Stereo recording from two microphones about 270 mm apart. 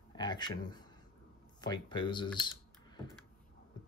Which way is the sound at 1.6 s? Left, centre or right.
Centre.